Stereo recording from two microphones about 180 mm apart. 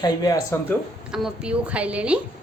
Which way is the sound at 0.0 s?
20° left (ahead or behind).